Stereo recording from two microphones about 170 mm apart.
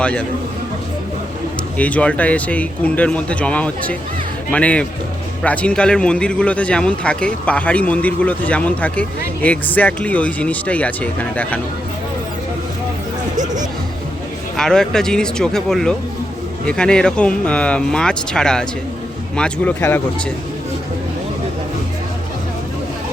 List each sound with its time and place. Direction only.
0.0 s a man's voice: 5° left (ahead or behind)
1.8 s a man's voice: 10° left (ahead or behind)
13.3 s music: 45° right (ahead or behind)
14.5 s a man's voice: 5° left (ahead or behind)